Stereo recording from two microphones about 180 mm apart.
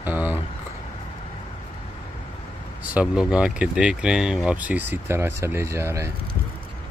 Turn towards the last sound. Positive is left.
turn(degrees=-15)  # may be behind; listen again after turning